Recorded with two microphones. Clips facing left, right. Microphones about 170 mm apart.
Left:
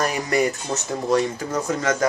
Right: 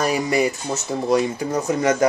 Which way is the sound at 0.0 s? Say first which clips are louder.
Right 2 dB; 10° right (ahead or behind).